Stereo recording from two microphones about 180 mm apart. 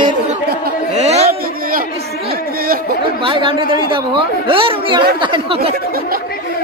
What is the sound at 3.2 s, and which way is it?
A woman's voice, 30° right (ahead or behind).